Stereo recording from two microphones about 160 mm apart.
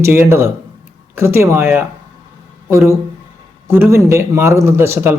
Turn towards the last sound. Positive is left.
turn(degrees=-15)  # may be behind; listen again after turning